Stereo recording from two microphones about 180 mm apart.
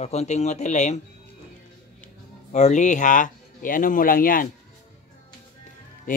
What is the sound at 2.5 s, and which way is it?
Speech, 40° left (ahead or behind).